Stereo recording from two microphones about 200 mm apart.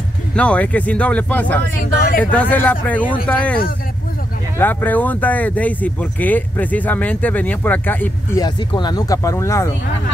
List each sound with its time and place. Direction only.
0.4 s speech: 5° left (ahead or behind)
1.8 s speech: 45° left (ahead or behind)
2.3 s speech: 10° left (ahead or behind)
4.6 s speech: 10° left (ahead or behind)